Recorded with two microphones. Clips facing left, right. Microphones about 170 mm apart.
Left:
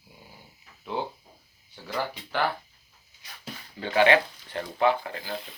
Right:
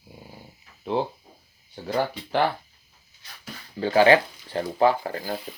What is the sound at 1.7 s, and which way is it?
Speech, 35° right (ahead or behind).